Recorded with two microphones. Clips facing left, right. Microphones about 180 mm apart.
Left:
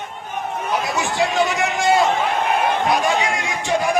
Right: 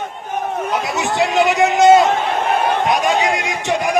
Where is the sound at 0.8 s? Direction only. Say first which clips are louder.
Right 3 dB; 20° right (ahead or behind).